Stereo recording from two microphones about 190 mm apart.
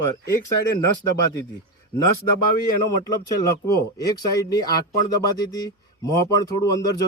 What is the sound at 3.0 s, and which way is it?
Speech, 20° left (ahead or behind).